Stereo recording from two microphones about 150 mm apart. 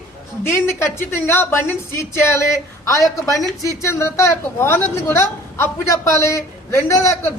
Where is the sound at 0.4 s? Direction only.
15° left (ahead or behind).